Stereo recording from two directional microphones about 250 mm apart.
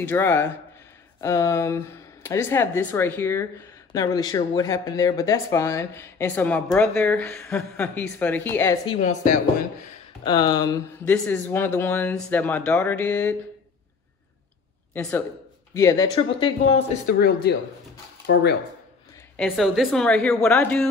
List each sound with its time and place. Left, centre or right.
0.0 s speech: centre
8.8 s speech: left
10.2 s speech: centre
15.0 s speech: centre
17.0 s speech: left
19.3 s a woman's voice: centre